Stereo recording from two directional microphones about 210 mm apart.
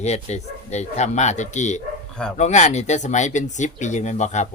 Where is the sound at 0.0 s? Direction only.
30° left (ahead or behind).